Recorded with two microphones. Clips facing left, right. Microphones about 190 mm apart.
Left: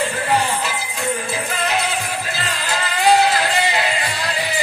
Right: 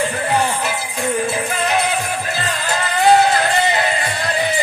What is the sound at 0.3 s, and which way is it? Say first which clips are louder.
Music: even; 55° right (ahead or behind).